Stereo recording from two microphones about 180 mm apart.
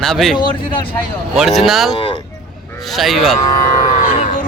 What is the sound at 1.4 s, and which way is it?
Speech, centre (ahead or behind).